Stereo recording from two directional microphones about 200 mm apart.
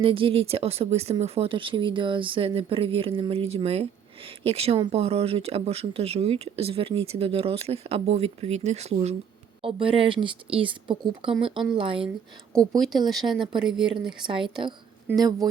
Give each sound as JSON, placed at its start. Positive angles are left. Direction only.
{"t": 0.0, "sound": "speech", "side_deg": -25}
{"t": 13.2, "sound": "speech", "side_deg": -20}
{"t": 13.6, "sound": "speech", "side_deg": -5}
{"t": 14.1, "sound": "speech", "side_deg": -25}